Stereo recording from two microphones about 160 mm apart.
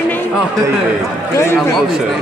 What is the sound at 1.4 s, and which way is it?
Speech, 15° left (ahead or behind).